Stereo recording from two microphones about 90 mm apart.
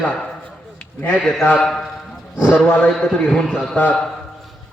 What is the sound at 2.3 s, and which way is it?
Speech, 20° left (ahead or behind).